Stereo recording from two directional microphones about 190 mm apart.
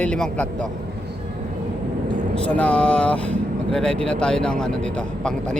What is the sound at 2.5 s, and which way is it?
Speech, 5° left (ahead or behind).